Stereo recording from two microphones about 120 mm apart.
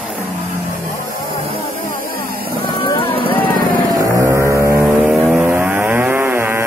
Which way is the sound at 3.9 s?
30° right (ahead or behind).